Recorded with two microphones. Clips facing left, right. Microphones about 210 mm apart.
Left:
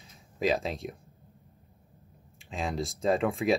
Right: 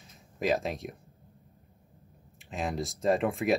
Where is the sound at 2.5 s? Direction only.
Centre (ahead or behind).